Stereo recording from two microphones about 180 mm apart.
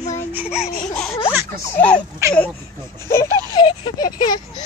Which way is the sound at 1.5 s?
15° left (ahead or behind).